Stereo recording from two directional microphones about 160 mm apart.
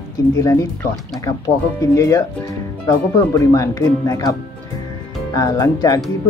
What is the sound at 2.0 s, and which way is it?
Speech, 20° left (ahead or behind).